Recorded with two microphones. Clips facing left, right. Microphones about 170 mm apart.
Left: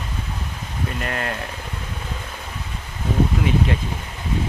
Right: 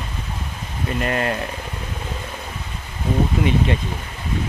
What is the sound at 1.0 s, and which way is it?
Speech, 10° right (ahead or behind).